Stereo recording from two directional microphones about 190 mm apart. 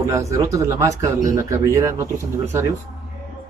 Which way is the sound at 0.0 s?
15° right (ahead or behind).